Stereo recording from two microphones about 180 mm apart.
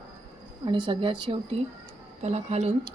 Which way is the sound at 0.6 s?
25° right (ahead or behind).